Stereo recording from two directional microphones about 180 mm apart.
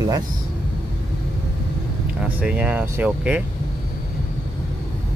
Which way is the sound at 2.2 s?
5° right (ahead or behind).